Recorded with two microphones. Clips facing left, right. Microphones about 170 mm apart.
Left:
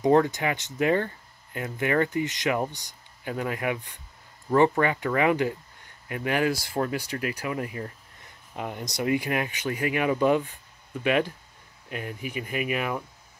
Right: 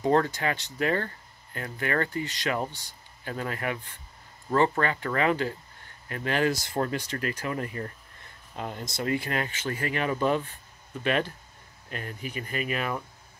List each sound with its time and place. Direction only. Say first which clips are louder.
0.0 s speech: left 3 dB; 15° left (ahead or behind)